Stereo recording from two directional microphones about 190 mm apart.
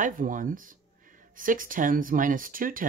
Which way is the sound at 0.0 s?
45° right (ahead or behind).